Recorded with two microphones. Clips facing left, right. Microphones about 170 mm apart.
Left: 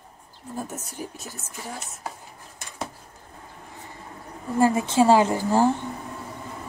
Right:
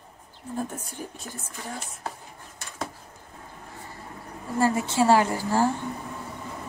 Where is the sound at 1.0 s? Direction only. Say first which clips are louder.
Left 3 dB; 10° left (ahead or behind).